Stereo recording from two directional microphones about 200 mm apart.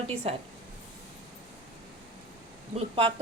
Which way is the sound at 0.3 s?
30° right (ahead or behind).